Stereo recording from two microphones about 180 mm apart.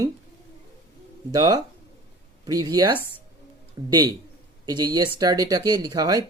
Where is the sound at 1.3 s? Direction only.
20° right (ahead or behind).